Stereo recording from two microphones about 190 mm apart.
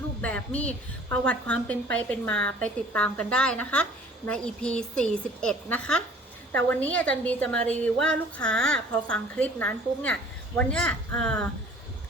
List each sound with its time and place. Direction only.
0.2 s a woman's voice: 5° left (ahead or behind)